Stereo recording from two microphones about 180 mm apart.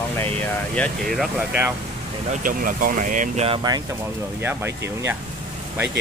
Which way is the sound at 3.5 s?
25° right (ahead or behind).